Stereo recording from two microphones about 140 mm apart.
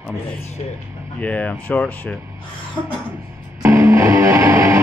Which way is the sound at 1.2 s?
10° left (ahead or behind).